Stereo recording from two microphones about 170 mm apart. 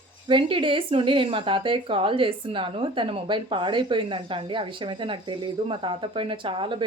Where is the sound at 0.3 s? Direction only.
30° right (ahead or behind).